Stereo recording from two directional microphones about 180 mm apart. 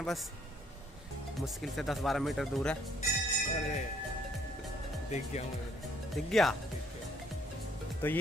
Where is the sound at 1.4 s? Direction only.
Centre (ahead or behind).